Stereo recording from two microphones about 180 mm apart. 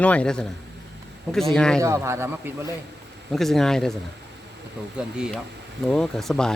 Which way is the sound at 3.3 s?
Centre (ahead or behind).